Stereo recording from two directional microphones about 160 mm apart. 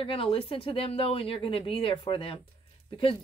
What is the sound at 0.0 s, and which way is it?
Speech, 35° left (ahead or behind).